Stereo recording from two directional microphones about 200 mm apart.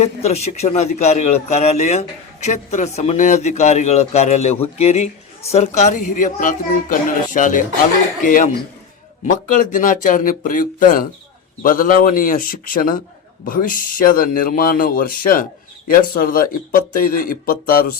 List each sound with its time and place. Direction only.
0.0 s a man's voice: 30° left (ahead or behind)